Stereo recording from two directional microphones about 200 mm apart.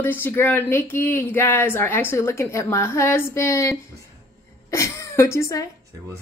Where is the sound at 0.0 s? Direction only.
10° left (ahead or behind).